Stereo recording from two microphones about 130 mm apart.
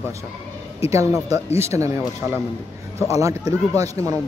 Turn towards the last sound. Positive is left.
turn(degrees=-25)  # may be behind; listen again after turning